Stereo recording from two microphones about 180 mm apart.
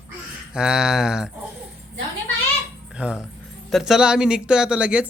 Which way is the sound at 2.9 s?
5° right (ahead or behind).